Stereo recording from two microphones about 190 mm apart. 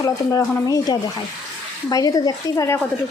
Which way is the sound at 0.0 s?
15° left (ahead or behind).